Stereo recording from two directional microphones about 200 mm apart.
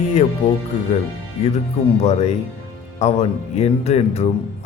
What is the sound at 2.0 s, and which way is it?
Speech, 30° left (ahead or behind).